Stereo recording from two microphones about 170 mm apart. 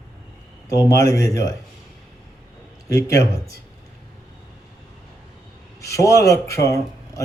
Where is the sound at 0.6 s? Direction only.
20° left (ahead or behind).